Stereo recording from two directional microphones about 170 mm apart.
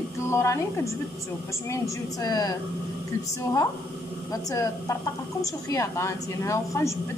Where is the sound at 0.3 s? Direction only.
15° left (ahead or behind).